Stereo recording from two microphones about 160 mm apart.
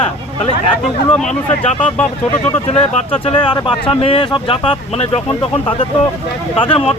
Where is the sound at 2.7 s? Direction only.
40° left (ahead or behind).